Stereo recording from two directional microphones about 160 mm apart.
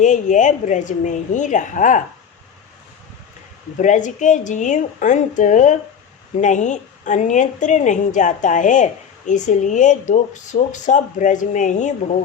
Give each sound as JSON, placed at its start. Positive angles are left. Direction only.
{"t": 0.0, "sound": "a woman's voice", "side_deg": 50}
{"t": 3.8, "sound": "a woman's voice", "side_deg": 50}